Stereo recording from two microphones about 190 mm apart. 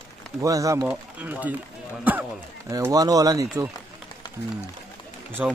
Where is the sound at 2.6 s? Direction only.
15° right (ahead or behind).